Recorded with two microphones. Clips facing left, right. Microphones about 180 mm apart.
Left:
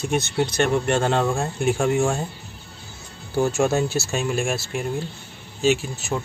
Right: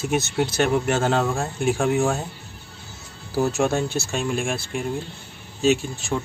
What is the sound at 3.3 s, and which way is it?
Speech, centre (ahead or behind).